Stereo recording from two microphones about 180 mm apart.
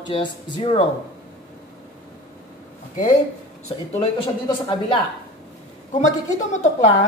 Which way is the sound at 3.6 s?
30° left (ahead or behind).